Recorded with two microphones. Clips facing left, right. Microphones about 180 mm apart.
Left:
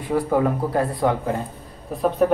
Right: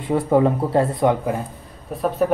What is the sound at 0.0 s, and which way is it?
Speech, 25° right (ahead or behind).